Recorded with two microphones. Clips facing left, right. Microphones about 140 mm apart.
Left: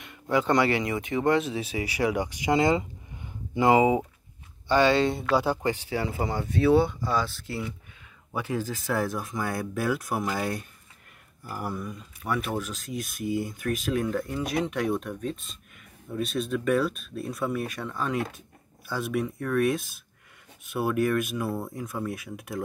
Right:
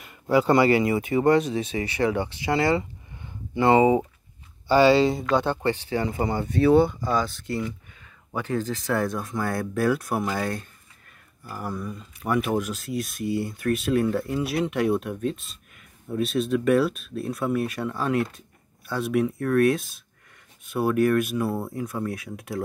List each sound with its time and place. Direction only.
0.0 s speech: 5° right (ahead or behind)
4.6 s speech: 5° right (ahead or behind)
10.3 s speech: 10° left (ahead or behind)
12.3 s speech: 10° right (ahead or behind)
16.3 s speech: 5° right (ahead or behind)